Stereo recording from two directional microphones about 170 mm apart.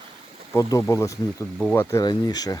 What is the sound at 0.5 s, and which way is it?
Speech, 15° left (ahead or behind).